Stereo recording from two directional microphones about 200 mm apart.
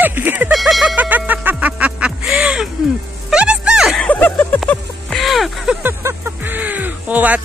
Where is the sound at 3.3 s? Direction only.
5° right (ahead or behind).